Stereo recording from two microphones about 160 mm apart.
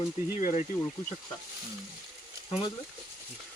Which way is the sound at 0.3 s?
50° left (ahead or behind).